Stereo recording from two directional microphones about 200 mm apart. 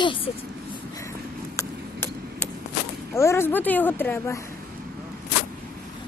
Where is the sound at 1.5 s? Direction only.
10° left (ahead or behind).